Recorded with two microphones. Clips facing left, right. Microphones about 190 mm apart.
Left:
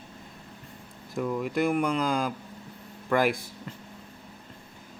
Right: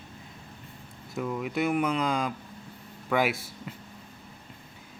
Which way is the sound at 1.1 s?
Centre (ahead or behind).